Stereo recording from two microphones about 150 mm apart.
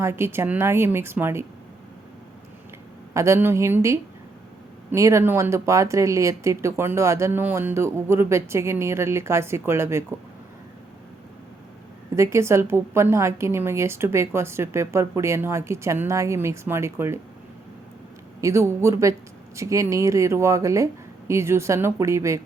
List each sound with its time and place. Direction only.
0.0 s speech: 15° right (ahead or behind)
3.2 s speech: 15° right (ahead or behind)
12.1 s speech: 20° right (ahead or behind)
18.3 s speech: 20° right (ahead or behind)